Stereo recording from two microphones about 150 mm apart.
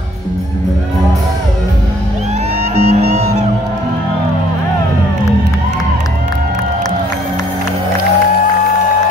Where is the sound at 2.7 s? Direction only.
50° right (ahead or behind).